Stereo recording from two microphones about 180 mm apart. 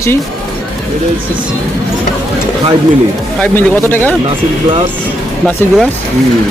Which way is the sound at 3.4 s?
10° left (ahead or behind).